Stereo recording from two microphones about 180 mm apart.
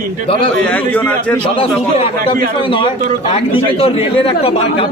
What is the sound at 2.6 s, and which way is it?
Speech, 25° left (ahead or behind).